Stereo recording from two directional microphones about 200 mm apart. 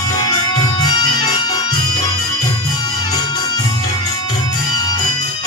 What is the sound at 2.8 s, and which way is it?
Music, 20° left (ahead or behind).